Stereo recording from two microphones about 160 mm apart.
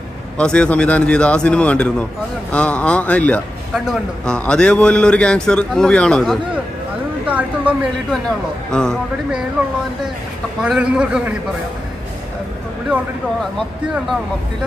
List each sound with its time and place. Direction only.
0.4 s a man's voice: 5° left (ahead or behind)
3.7 s a man's voice: 5° right (ahead or behind)
8.7 s a man's voice: 5° left (ahead or behind)
10.6 s a man's voice: 5° right (ahead or behind)